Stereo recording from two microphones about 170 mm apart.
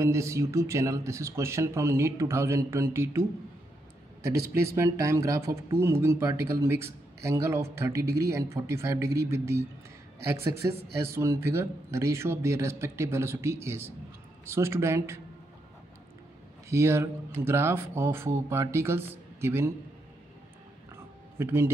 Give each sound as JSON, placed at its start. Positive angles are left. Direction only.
{"t": 0.0, "sound": "speech", "side_deg": -15}
{"t": 16.6, "sound": "speech", "side_deg": -15}
{"t": 20.9, "sound": "a sound", "side_deg": -15}